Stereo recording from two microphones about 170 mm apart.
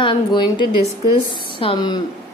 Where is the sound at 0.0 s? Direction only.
30° left (ahead or behind).